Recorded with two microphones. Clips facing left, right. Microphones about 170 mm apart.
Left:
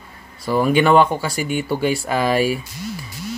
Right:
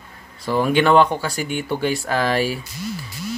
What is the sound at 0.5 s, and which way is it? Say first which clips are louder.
A man's voice: left 1 dB; 5° left (ahead or behind).